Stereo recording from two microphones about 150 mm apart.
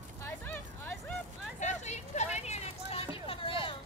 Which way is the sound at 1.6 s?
50° left (ahead or behind).